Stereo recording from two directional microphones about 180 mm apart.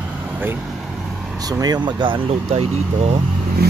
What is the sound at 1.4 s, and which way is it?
Speech, 20° right (ahead or behind).